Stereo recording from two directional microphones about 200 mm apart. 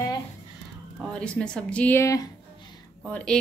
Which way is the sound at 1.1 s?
5° left (ahead or behind).